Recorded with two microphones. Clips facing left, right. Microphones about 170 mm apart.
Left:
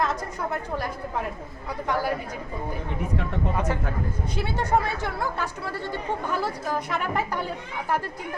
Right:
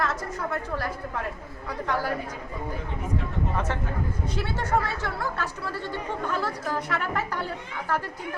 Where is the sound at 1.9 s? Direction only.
15° left (ahead or behind).